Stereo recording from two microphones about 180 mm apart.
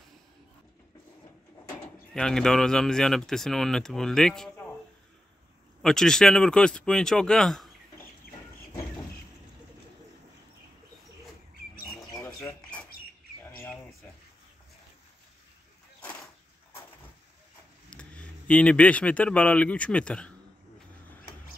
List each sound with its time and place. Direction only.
2.1 s speech: 5° left (ahead or behind)
5.8 s speech: centre (ahead or behind)
12.1 s bird: 20° left (ahead or behind)
17.8 s speech: 5° left (ahead or behind)